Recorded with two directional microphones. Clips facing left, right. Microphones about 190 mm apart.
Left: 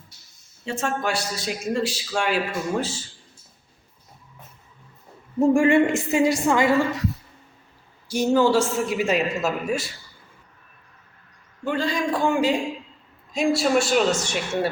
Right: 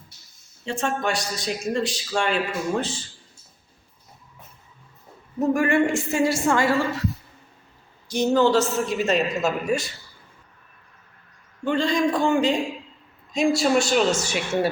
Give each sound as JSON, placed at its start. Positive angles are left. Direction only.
{"t": 0.6, "sound": "a man's voice", "side_deg": 5}
{"t": 5.4, "sound": "a woman's voice", "side_deg": 25}
{"t": 8.0, "sound": "a man's voice", "side_deg": 10}
{"t": 11.6, "sound": "a man's voice", "side_deg": 5}